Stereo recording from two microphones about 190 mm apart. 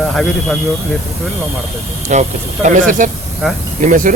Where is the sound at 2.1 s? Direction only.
40° right (ahead or behind).